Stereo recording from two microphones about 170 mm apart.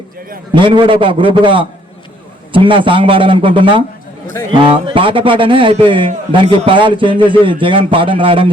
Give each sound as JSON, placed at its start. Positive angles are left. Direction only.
{"t": 0.5, "sound": "a man's voice", "side_deg": -30}